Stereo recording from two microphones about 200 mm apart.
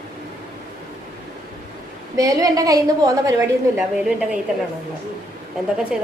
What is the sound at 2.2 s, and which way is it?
A woman's voice, 15° right (ahead or behind).